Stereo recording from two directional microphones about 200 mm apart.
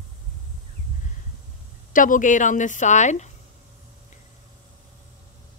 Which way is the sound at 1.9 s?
40° left (ahead or behind).